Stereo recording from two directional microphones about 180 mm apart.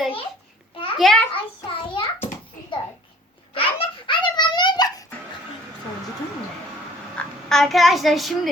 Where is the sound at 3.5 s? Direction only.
30° left (ahead or behind).